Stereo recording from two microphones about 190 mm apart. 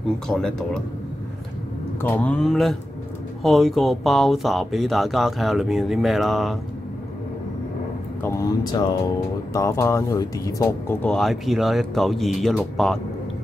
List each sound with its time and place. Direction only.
0.3 s speech: 5° left (ahead or behind)
2.0 s speech: 10° left (ahead or behind)
8.2 s speech: 15° left (ahead or behind)